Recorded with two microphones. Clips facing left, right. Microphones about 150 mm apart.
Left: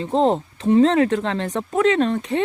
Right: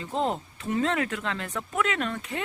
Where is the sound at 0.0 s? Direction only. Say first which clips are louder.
Left 10 dB; 30° left (ahead or behind).